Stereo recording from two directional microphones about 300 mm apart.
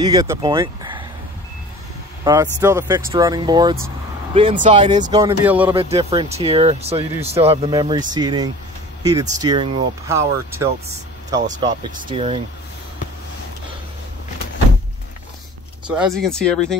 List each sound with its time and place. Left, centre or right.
0.0 s speech: centre
2.2 s speech: centre
5.1 s speech: centre
5.8 s speech: centre
15.9 s speech: centre